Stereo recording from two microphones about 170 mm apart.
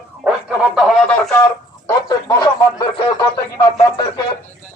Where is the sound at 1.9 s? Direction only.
20° left (ahead or behind).